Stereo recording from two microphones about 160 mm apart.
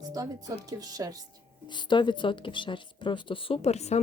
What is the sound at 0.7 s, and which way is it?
Speech, 25° right (ahead or behind).